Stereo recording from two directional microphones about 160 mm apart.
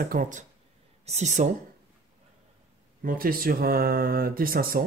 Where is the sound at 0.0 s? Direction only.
60° right (ahead or behind).